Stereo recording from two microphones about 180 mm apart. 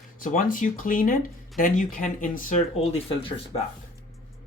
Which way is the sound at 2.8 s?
35° left (ahead or behind).